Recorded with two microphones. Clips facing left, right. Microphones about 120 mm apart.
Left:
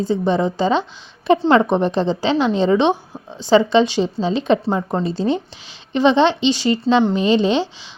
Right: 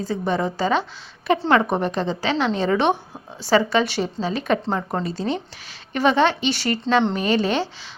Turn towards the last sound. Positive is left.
turn(degrees=20)  # may be behind; listen again after turning